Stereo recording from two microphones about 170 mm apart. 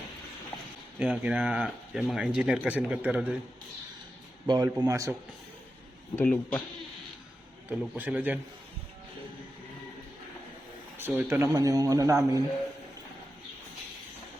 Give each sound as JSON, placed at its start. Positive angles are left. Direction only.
{"t": 0.9, "sound": "speech", "side_deg": -5}
{"t": 4.4, "sound": "speech", "side_deg": -25}
{"t": 6.1, "sound": "speech", "side_deg": 10}
{"t": 7.7, "sound": "speech", "side_deg": -10}
{"t": 10.9, "sound": "speech", "side_deg": -15}